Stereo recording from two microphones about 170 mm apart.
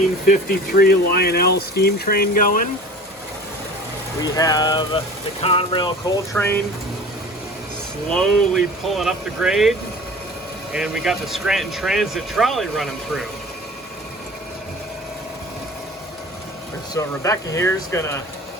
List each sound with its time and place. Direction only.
0.3 s speech: 60° left (ahead or behind)
4.2 s speech: 20° left (ahead or behind)
6.3 s speech: 10° left (ahead or behind)
8.1 s speech: centre (ahead or behind)
16.9 s speech: 20° left (ahead or behind)